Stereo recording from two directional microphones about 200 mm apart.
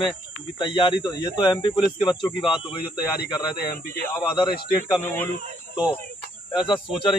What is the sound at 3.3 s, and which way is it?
Speech, 15° left (ahead or behind).